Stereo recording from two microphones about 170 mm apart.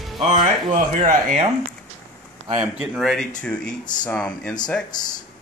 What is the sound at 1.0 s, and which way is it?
Speech, 55° right (ahead or behind).